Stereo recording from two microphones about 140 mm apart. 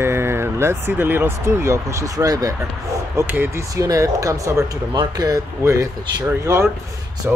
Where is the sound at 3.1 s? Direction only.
15° right (ahead or behind).